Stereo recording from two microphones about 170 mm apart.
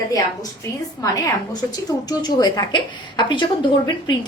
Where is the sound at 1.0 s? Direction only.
20° left (ahead or behind).